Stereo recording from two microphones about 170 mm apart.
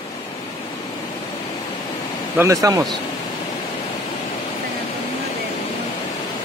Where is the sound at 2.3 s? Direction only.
20° right (ahead or behind).